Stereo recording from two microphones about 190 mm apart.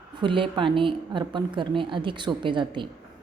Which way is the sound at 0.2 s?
25° right (ahead or behind).